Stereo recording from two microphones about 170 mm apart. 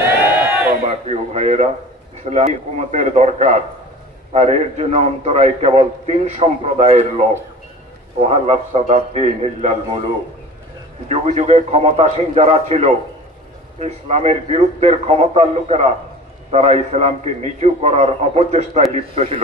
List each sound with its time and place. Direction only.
0.4 s crowd: 10° right (ahead or behind)
1.0 s a sound: 40° right (ahead or behind)
2.2 s a man's voice: 40° right (ahead or behind)
11.1 s a man's voice: 40° right (ahead or behind)